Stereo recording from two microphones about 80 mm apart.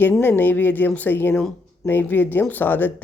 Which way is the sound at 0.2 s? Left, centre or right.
Left.